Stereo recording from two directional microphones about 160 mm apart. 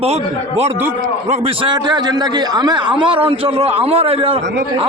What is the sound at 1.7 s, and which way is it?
A man's voice, 25° right (ahead or behind).